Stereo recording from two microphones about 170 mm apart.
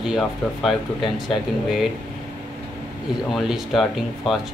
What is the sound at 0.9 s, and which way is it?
Speech, 25° left (ahead or behind).